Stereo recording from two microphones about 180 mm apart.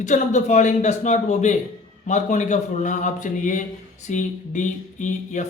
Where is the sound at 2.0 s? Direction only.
40° left (ahead or behind).